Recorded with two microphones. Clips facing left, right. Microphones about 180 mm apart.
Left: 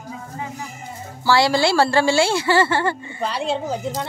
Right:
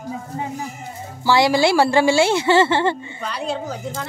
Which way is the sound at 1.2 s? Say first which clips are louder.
Right 1 dB; 20° right (ahead or behind).